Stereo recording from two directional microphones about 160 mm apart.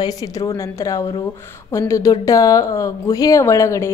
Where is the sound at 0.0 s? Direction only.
20° left (ahead or behind).